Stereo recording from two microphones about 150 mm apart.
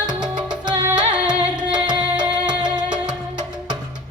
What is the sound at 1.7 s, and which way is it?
Music, 30° right (ahead or behind).